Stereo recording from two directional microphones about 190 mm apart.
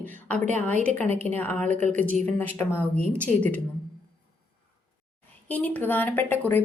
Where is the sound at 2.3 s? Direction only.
10° left (ahead or behind).